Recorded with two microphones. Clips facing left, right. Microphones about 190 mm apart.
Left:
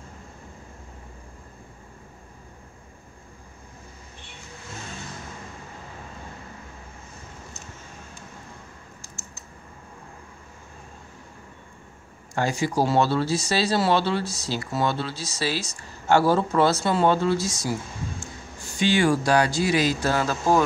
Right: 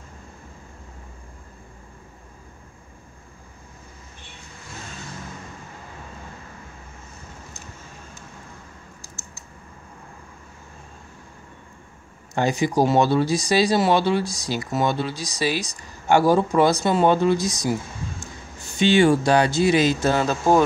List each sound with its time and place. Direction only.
12.4 s speech: 20° right (ahead or behind)
18.8 s speech: 25° right (ahead or behind)